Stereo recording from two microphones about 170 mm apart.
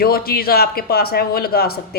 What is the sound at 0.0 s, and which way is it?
Speech, 65° left (ahead or behind).